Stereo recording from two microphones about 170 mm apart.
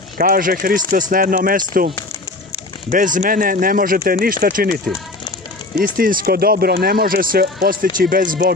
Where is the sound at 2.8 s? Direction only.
50° right (ahead or behind).